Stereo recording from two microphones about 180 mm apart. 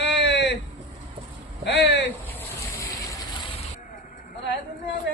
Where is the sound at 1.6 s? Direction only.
70° left (ahead or behind).